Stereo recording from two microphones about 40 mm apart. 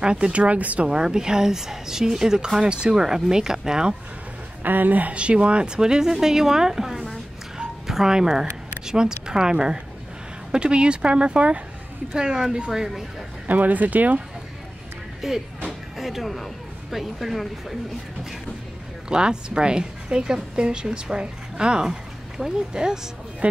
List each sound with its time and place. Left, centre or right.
0.0 s speech: right
0.8 s speech: centre
4.6 s speech: right
5.1 s a woman's voice: right
5.8 s speech: centre
7.5 s music: centre
8.8 s a woman's voice: centre
12.2 s speech: centre
13.5 s speech: right
15.2 s speech: centre
19.0 s a woman's voice: right